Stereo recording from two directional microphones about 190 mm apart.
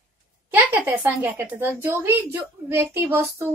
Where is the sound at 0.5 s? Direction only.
10° right (ahead or behind).